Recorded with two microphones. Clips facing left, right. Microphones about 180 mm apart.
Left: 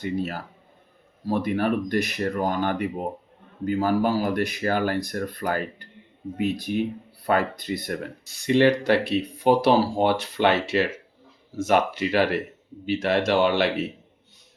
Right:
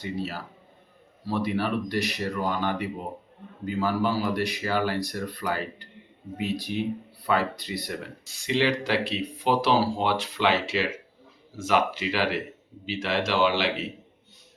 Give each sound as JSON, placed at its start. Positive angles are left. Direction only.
{"t": 0.0, "sound": "speech", "side_deg": 50}